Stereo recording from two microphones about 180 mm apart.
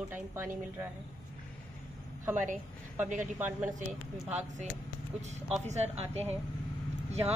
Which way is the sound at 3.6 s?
45° right (ahead or behind).